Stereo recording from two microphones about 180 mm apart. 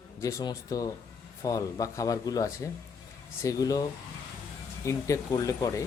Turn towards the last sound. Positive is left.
turn(degrees=20)  # may be behind; listen again after turning